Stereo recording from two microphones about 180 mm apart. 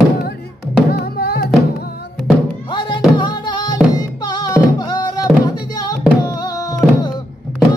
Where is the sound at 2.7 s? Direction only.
25° left (ahead or behind).